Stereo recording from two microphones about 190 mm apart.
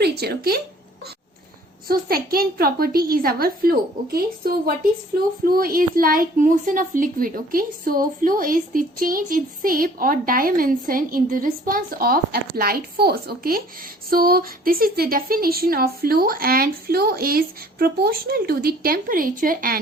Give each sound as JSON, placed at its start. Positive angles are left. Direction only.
{"t": 0.0, "sound": "speech", "side_deg": -55}
{"t": 1.9, "sound": "a woman's voice", "side_deg": -50}